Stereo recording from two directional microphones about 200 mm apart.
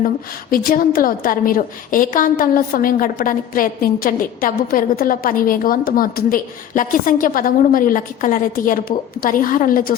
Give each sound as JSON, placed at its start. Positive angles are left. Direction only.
{"t": 0.5, "sound": "a woman's voice", "side_deg": 45}